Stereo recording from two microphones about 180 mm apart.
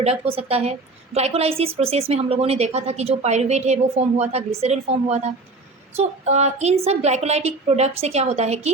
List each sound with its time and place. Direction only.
0.0 s a woman's voice: 35° right (ahead or behind)